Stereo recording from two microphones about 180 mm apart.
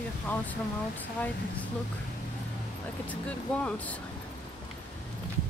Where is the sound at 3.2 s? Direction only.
5° left (ahead or behind).